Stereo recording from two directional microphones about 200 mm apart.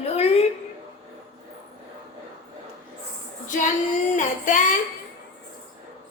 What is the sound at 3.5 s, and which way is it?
Child singing, 40° left (ahead or behind).